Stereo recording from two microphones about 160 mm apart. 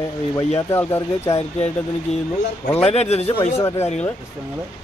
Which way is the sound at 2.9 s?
40° left (ahead or behind).